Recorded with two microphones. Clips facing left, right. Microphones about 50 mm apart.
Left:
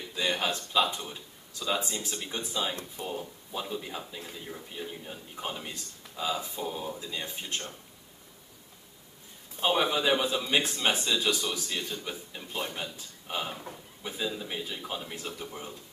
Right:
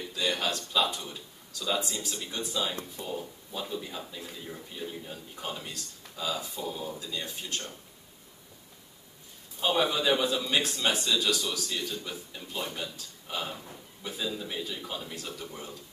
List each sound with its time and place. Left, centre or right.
0.1 s a man's voice: left
9.6 s a man's voice: left